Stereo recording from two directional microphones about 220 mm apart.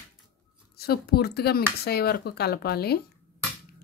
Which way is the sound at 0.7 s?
45° left (ahead or behind).